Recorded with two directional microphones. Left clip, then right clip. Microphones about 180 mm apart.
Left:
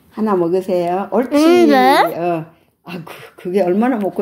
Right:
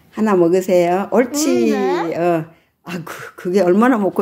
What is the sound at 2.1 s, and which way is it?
Speech, 40° right (ahead or behind).